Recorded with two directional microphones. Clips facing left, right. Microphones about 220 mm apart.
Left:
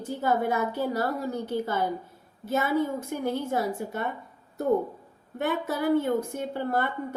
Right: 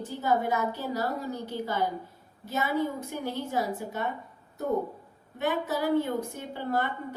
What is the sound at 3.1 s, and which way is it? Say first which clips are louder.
Speech: left 4 dB; 50° left (ahead or behind).